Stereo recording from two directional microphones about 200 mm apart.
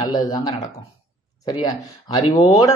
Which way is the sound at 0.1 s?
20° left (ahead or behind).